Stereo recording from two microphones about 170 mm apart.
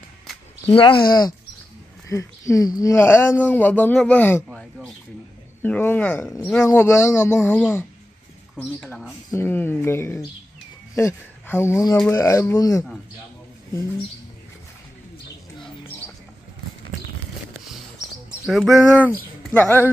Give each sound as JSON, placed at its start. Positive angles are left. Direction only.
{"t": 0.7, "sound": "speech", "side_deg": 30}
{"t": 4.5, "sound": "a sound", "side_deg": 0}
{"t": 5.6, "sound": "speech", "side_deg": 10}
{"t": 18.4, "sound": "bird", "side_deg": 0}
{"t": 19.0, "sound": "speech", "side_deg": 10}